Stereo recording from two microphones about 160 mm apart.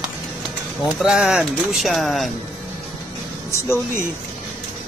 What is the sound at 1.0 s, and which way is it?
Speech, 5° right (ahead or behind).